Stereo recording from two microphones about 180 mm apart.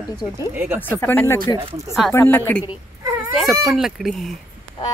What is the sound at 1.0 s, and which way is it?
A woman's voice, 10° left (ahead or behind).